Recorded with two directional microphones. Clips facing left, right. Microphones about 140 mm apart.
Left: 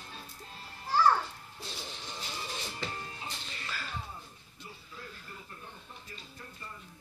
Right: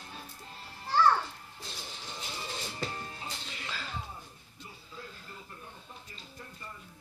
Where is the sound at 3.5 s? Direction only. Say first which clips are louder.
Even; 20° right (ahead or behind).